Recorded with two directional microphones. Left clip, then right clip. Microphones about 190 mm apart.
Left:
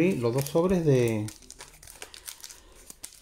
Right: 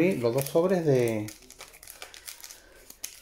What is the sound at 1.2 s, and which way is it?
Crumpling, 5° left (ahead or behind).